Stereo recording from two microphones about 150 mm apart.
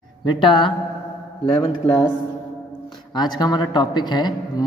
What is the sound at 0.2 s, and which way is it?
Speech, 35° left (ahead or behind).